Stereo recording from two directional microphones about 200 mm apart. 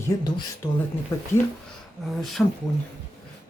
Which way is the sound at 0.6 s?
25° left (ahead or behind).